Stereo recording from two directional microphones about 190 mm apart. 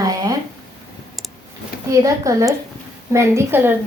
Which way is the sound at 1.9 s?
15° right (ahead or behind).